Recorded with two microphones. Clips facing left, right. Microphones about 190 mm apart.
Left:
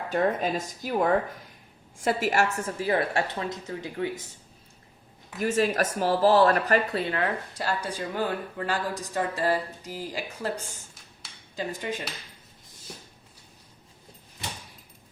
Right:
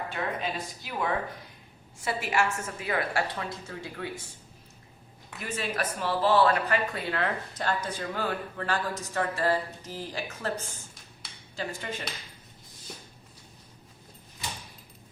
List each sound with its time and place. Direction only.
0.1 s a woman's voice: 45° left (ahead or behind); by 4.2 s 20° left (ahead or behind)
5.4 s a woman's voice: 40° left (ahead or behind)
7.1 s speech: 10° left (ahead or behind)